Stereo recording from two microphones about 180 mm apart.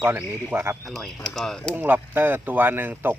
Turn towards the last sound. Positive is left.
turn(degrees=-10)  # may be behind; listen again after turning